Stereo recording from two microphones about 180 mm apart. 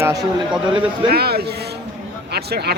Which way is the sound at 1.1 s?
60° right (ahead or behind).